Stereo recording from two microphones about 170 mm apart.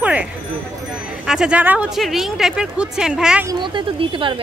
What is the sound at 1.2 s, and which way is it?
Speech, 5° right (ahead or behind).